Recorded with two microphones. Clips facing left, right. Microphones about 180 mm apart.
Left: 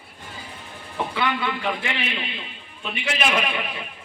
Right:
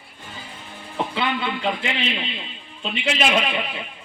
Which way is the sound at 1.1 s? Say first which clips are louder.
Left 1 dB; 20° right (ahead or behind).